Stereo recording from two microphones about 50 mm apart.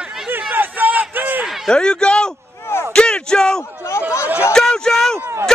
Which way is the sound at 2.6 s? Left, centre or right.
Left.